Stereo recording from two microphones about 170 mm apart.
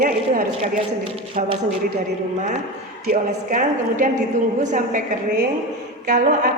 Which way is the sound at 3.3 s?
50° right (ahead or behind).